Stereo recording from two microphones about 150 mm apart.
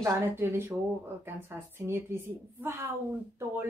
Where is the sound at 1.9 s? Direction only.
20° right (ahead or behind).